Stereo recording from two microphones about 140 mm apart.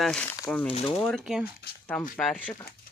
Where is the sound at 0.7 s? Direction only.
45° left (ahead or behind).